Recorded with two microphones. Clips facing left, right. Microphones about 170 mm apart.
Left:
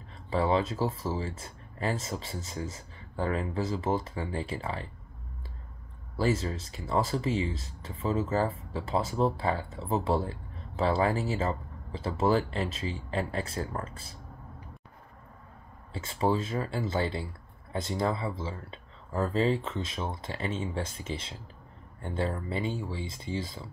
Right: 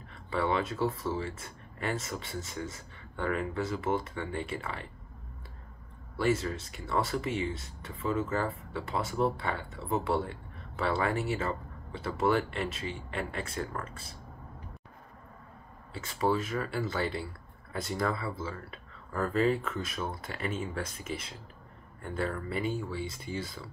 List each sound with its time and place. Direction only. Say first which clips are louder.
0.1 s speech: left 3 dB; 30° left (ahead or behind)
6.1 s speech: even; 30° left (ahead or behind)
15.9 s speech: left 1 dB; 30° left (ahead or behind)